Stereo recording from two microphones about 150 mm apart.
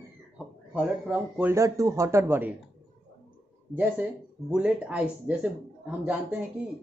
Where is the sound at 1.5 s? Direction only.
20° right (ahead or behind).